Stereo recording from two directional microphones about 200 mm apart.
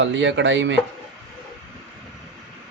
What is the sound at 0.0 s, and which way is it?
Speech, 65° right (ahead or behind).